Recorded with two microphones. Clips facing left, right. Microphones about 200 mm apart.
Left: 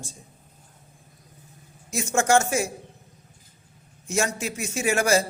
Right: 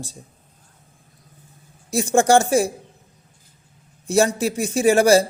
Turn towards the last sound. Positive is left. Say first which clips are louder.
# right 8 dB
turn(degrees=-35)  # may be behind; listen again after turning